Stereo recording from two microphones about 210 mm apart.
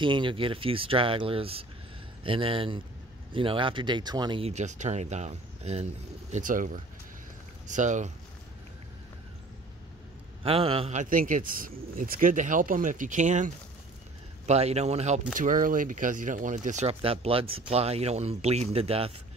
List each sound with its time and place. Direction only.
0.0 s speech: 25° right (ahead or behind)
10.4 s speech: 25° right (ahead or behind)